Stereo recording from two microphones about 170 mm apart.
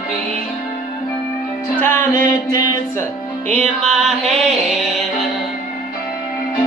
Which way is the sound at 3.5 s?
45° right (ahead or behind).